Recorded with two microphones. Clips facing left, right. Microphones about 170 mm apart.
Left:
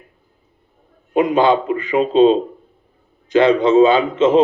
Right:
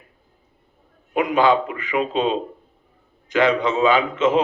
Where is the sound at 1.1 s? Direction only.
30° left (ahead or behind).